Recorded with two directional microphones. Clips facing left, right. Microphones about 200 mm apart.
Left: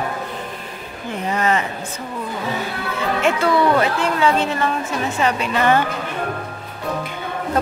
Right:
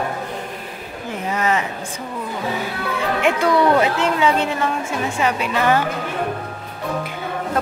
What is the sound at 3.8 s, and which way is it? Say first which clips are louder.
A woman's voice: right 1 dB; 20° right (ahead or behind).